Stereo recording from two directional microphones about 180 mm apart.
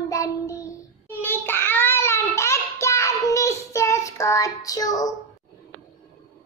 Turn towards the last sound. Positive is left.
turn(degrees=20)  # may be behind; listen again after turning